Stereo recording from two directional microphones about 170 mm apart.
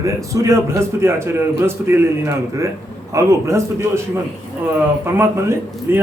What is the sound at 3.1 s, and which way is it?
Speech, 15° right (ahead or behind).